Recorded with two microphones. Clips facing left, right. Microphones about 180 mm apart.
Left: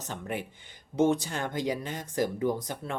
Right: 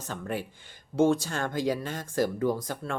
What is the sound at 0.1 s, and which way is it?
Speech, 15° left (ahead or behind).